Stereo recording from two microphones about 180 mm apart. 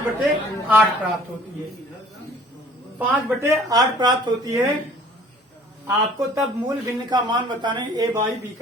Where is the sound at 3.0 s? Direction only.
20° right (ahead or behind).